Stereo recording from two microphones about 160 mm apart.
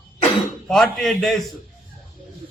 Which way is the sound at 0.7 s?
Centre (ahead or behind).